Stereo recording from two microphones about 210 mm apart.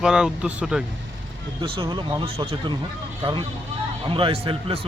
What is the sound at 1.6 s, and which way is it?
A man's voice, 25° right (ahead or behind).